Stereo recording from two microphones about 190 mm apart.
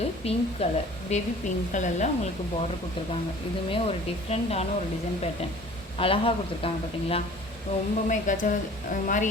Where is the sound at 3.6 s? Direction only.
30° left (ahead or behind).